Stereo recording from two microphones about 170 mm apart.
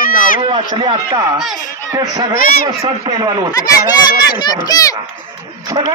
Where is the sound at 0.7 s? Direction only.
25° right (ahead or behind).